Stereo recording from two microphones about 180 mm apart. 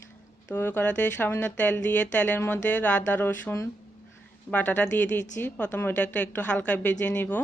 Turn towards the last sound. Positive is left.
turn(degrees=10)  # may be behind; listen again after turning